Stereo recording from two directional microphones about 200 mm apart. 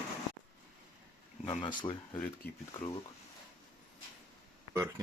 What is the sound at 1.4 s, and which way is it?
Speech, 25° left (ahead or behind).